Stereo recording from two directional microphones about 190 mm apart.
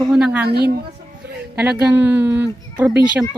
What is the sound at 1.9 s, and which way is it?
Speech, 10° right (ahead or behind).